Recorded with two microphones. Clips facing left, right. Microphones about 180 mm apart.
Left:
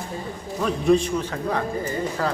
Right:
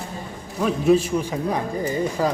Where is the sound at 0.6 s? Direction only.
5° right (ahead or behind).